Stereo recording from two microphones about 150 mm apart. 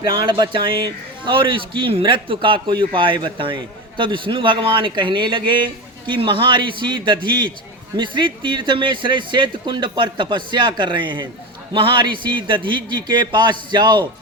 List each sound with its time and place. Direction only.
0.1 s a man's voice: 30° right (ahead or behind)